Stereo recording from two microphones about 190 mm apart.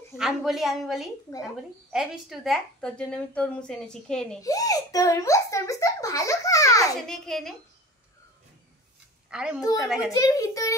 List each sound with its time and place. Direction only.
0.1 s a woman's voice: centre (ahead or behind)
4.4 s a child's voice: 20° left (ahead or behind)
7.0 s a woman's voice: centre (ahead or behind)
9.3 s a woman's voice: 5° right (ahead or behind)
10.1 s a child's voice: 15° left (ahead or behind)